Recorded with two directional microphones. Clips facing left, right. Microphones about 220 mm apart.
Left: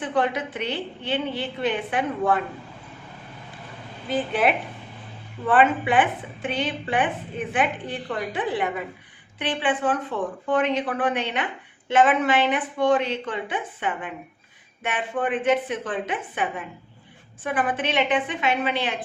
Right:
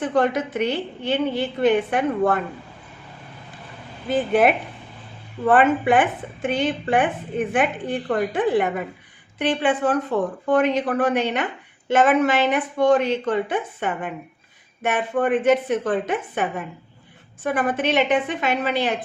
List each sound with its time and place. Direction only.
0.0 s a woman's voice: 45° right (ahead or behind)
4.3 s a woman's voice: 50° right (ahead or behind)